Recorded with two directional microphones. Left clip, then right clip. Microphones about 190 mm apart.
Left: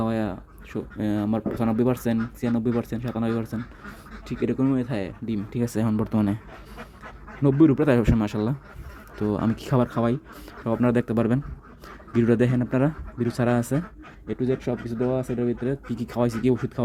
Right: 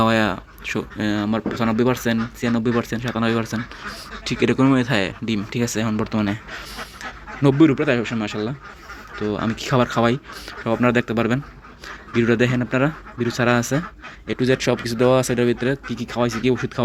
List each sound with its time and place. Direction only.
0.0 s speech: centre (ahead or behind)
5.7 s speech: 20° left (ahead or behind)
7.6 s speech: 25° left (ahead or behind)
7.9 s speech: 35° left (ahead or behind); by 13.8 s 15° left (ahead or behind)
14.3 s speech: 5° right (ahead or behind)
15.7 s speech: 15° left (ahead or behind)